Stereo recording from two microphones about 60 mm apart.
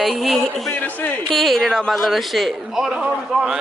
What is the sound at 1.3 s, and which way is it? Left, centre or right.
A man's voice, centre.